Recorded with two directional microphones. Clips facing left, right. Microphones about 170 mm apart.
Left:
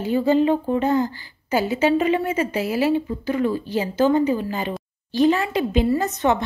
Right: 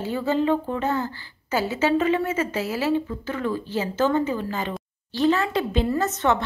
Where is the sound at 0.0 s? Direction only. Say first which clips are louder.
Left 5 dB; 15° left (ahead or behind).